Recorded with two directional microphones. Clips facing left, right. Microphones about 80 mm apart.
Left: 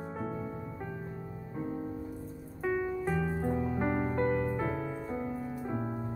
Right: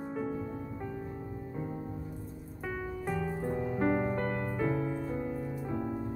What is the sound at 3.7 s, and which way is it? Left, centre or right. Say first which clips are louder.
Music: right 1 dB; left.